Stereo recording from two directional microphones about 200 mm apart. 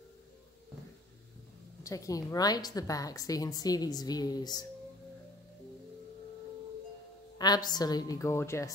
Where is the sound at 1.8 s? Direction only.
15° left (ahead or behind).